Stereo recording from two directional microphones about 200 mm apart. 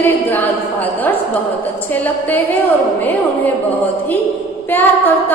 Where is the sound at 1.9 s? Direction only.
10° left (ahead or behind).